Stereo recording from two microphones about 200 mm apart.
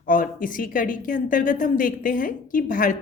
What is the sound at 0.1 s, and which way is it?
A woman's voice, 45° left (ahead or behind).